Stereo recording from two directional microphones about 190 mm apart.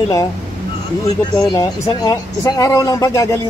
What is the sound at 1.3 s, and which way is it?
Speech, 20° left (ahead or behind).